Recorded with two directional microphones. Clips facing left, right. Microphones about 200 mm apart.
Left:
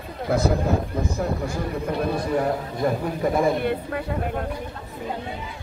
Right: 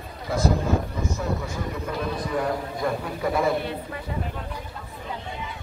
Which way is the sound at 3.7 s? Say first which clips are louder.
Left 7 dB; 60° left (ahead or behind).